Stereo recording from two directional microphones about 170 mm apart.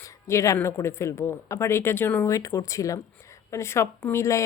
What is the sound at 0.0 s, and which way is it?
Speech, 20° left (ahead or behind).